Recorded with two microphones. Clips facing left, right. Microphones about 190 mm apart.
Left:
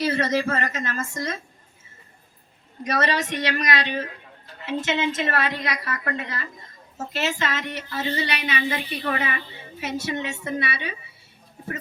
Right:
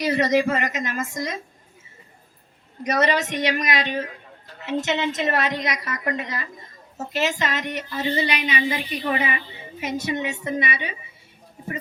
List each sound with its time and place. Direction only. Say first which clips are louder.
0.0 s speech: right 3 dB; 15° right (ahead or behind)
2.8 s speech: right 3 dB; 15° right (ahead or behind)
4.9 s speech: even; 20° right (ahead or behind)